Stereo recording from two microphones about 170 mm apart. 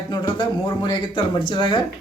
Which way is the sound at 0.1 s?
25° left (ahead or behind).